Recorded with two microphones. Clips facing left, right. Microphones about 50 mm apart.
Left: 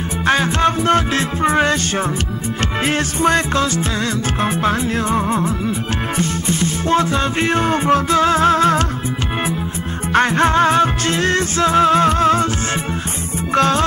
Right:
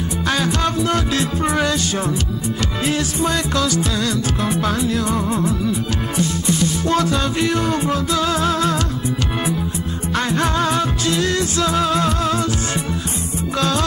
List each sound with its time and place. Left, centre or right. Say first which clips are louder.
0.3 s music: left 5 dB; left
2.8 s music: left 4 dB; left
10.1 s music: left 6 dB; left
13.6 s music: left 5 dB; left